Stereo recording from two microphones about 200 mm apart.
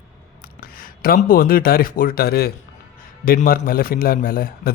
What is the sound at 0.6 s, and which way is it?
A man's voice, 45° left (ahead or behind).